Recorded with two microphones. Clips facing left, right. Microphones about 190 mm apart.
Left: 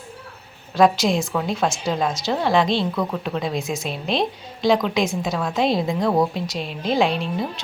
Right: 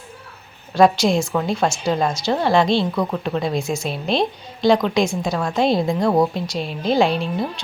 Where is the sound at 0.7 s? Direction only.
Centre (ahead or behind).